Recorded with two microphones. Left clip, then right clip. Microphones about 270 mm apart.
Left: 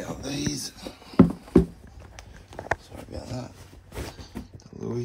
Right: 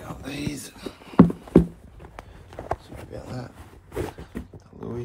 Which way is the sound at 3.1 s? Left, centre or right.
Left.